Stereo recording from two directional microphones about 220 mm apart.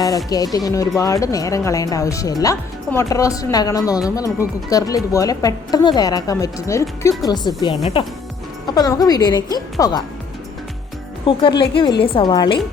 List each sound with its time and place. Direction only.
0.3 s speech: 15° left (ahead or behind)
11.3 s speech: 25° left (ahead or behind)